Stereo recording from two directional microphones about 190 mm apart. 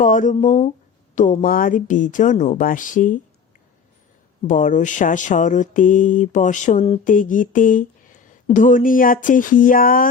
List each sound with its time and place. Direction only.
0.0 s speech: 40° left (ahead or behind)
4.4 s speech: 45° left (ahead or behind)